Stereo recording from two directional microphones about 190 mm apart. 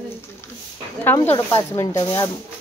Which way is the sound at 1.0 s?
10° left (ahead or behind).